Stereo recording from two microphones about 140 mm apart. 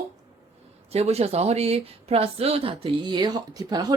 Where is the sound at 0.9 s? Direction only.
45° right (ahead or behind); by 3.9 s 25° right (ahead or behind).